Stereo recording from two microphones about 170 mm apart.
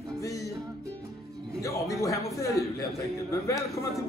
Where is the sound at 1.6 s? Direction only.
20° left (ahead or behind).